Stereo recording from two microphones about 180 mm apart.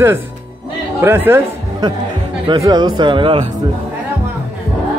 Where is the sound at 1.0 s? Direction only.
10° right (ahead or behind).